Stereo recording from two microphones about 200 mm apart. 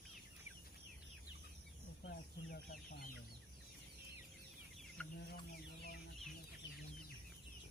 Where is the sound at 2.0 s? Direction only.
50° left (ahead or behind).